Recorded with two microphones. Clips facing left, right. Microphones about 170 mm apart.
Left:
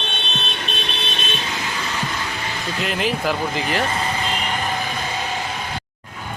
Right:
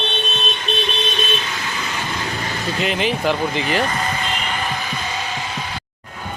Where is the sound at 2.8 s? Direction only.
Centre (ahead or behind).